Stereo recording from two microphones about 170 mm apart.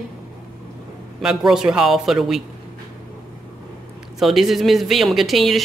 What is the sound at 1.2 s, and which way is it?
Speech, 5° right (ahead or behind).